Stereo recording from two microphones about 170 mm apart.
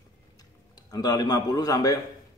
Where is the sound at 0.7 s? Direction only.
25° left (ahead or behind).